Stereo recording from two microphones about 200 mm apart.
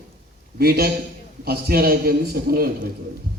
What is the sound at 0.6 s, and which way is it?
A man's voice, 50° right (ahead or behind).